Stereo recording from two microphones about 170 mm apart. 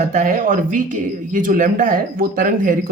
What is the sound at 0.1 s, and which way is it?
Speech, 50° right (ahead or behind).